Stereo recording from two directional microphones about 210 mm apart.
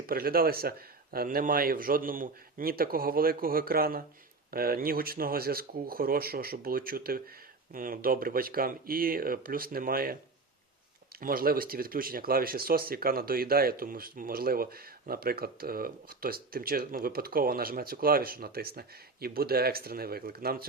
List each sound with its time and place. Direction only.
0.1 s speech: 45° right (ahead or behind)
11.2 s speech: 45° right (ahead or behind)